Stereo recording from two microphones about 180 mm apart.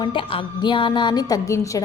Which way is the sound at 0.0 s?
30° left (ahead or behind).